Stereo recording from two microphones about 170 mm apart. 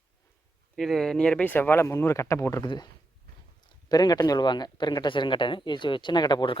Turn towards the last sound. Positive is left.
turn(degrees=25)  # may be behind; listen again after turning